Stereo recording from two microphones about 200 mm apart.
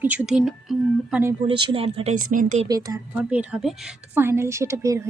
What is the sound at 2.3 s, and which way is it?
Speech, 40° right (ahead or behind).